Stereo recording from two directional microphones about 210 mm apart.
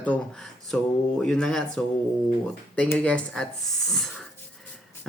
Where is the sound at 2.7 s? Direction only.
10° left (ahead or behind).